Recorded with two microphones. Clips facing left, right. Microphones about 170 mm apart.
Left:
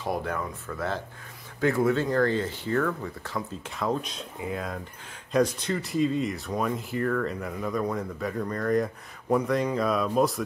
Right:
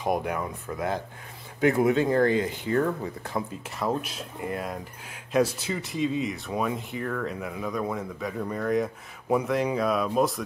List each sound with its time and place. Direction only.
0.0 s speech: 15° right (ahead or behind)
3.6 s speech: 5° right (ahead or behind)